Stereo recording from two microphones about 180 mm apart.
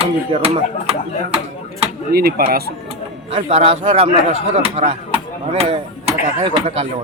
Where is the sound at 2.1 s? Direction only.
60° right (ahead or behind).